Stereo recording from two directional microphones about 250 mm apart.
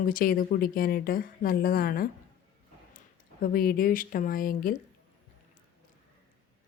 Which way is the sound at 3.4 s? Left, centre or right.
Left.